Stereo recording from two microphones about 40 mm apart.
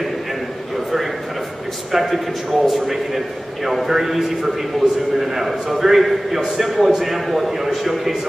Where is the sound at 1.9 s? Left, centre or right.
Centre.